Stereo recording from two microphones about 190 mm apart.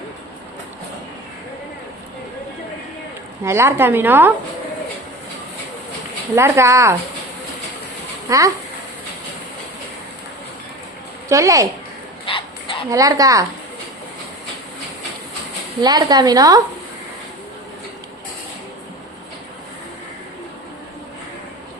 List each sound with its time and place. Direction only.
3.4 s speech: 15° right (ahead or behind)
6.3 s speech: 15° right (ahead or behind)
8.3 s speech: 15° right (ahead or behind)
11.3 s speech: 15° right (ahead or behind)
12.2 s dog: 25° left (ahead or behind)
12.9 s speech: 20° right (ahead or behind)
15.8 s a woman's voice: 20° right (ahead or behind)